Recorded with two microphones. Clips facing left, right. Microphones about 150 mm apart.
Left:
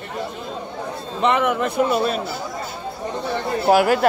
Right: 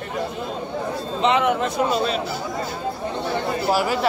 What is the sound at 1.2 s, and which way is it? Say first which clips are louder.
Speech: even; 55° left (ahead or behind).